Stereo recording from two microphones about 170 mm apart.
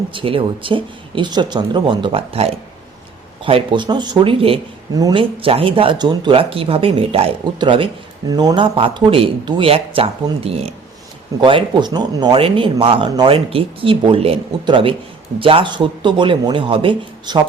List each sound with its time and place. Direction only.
0.1 s speech: 30° right (ahead or behind)